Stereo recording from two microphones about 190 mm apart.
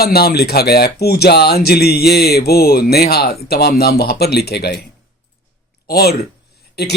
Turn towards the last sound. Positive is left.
turn(degrees=60)  # may be behind; listen again after turning